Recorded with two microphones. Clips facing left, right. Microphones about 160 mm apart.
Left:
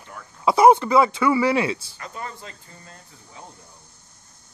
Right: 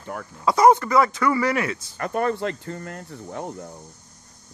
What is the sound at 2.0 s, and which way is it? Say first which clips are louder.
Speech: right 12 dB; 60° right (ahead or behind).